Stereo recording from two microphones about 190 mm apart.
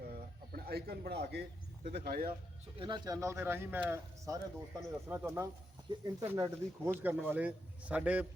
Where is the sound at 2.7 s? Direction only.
25° right (ahead or behind).